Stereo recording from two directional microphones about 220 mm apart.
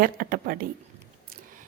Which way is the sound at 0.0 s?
40° right (ahead or behind).